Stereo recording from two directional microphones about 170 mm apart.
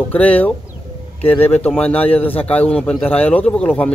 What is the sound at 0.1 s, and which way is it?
Speech, 10° left (ahead or behind).